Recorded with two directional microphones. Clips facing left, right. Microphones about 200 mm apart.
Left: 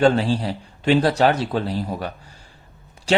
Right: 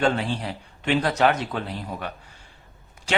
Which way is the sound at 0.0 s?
35° left (ahead or behind).